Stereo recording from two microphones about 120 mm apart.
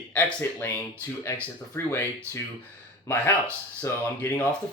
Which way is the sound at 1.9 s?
20° left (ahead or behind).